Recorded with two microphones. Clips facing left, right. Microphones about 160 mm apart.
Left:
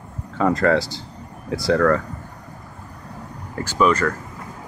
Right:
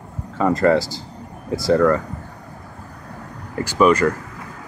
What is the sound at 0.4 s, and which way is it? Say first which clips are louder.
Speech: right 2 dB; 5° right (ahead or behind).